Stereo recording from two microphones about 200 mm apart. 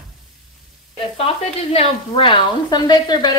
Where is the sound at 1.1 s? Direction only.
30° left (ahead or behind).